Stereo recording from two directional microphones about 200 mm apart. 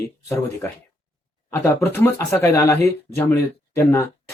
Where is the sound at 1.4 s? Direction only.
10° left (ahead or behind).